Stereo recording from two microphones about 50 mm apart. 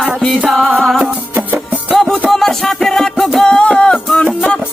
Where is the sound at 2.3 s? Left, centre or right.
Centre.